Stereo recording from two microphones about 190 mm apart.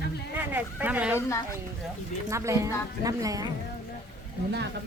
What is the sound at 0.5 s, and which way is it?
Speech, 10° right (ahead or behind).